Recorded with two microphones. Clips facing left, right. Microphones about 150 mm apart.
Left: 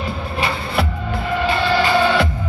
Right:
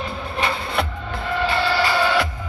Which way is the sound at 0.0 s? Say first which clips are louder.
Left 2 dB; 10° left (ahead or behind).